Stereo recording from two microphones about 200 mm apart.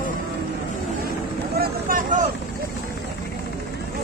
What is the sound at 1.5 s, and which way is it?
Vehicle, 45° right (ahead or behind).